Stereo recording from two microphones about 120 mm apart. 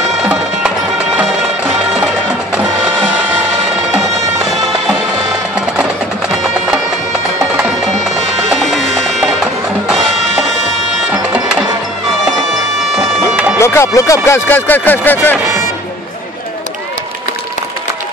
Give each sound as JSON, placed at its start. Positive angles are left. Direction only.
{"t": 0.2, "sound": "music", "side_deg": -10}
{"t": 5.8, "sound": "music", "side_deg": -5}
{"t": 8.5, "sound": "music", "side_deg": 0}
{"t": 12.9, "sound": "a sound", "side_deg": -5}
{"t": 13.6, "sound": "speech", "side_deg": 20}